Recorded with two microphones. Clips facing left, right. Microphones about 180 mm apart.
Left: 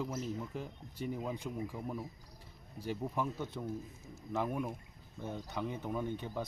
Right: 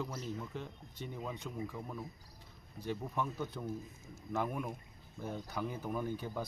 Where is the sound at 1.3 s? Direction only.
30° left (ahead or behind).